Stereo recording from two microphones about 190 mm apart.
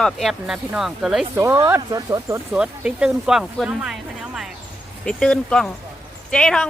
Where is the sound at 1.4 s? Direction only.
15° right (ahead or behind).